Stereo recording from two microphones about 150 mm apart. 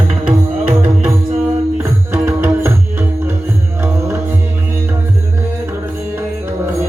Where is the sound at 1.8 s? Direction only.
15° right (ahead or behind).